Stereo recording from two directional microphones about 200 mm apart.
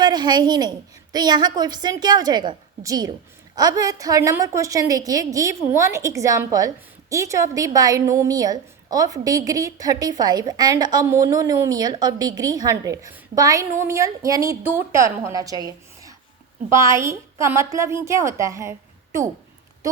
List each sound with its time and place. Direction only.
0.0 s a woman's voice: 20° right (ahead or behind)